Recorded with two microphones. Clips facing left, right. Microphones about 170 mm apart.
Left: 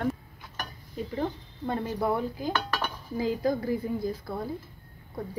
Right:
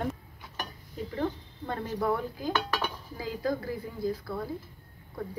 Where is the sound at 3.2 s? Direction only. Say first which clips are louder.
Left 4 dB; 20° left (ahead or behind).